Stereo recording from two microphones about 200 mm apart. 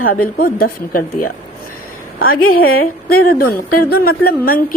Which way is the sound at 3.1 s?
50° left (ahead or behind).